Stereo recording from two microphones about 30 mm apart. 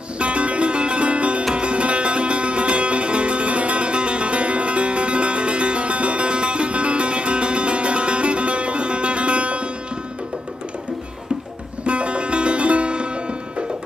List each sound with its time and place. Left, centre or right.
0.2 s music: right
11.8 s music: right